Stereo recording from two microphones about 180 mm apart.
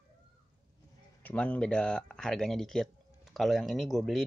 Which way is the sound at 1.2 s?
10° left (ahead or behind).